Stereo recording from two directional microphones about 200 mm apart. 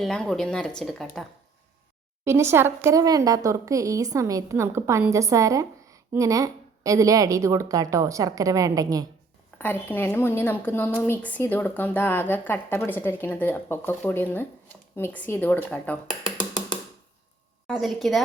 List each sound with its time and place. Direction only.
0.0 s speech: centre (ahead or behind)
2.2 s speech: 15° right (ahead or behind)
9.6 s a woman's voice: 10° left (ahead or behind)
17.7 s speech: centre (ahead or behind)